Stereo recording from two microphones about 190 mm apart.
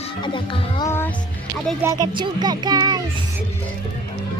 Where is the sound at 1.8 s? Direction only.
20° right (ahead or behind).